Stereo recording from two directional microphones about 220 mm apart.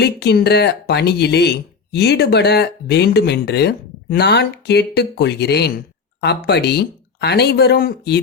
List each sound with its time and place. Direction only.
0.0 s speech: 50° left (ahead or behind)